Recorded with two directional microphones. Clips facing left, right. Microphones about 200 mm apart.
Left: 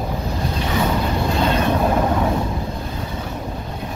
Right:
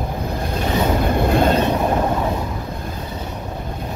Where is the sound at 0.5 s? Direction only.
55° right (ahead or behind).